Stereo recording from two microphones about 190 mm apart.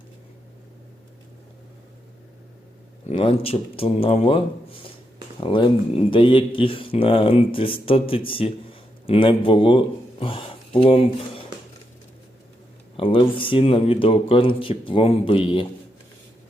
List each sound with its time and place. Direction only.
3.1 s speech: 30° left (ahead or behind)
13.0 s speech: 30° left (ahead or behind)